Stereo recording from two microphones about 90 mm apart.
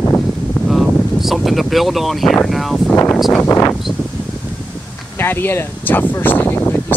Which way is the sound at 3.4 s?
30° left (ahead or behind).